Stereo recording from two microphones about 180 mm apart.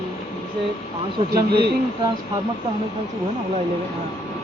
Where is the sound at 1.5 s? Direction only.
65° right (ahead or behind).